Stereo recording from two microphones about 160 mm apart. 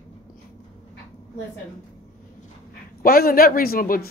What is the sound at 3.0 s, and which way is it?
Speech, 70° left (ahead or behind).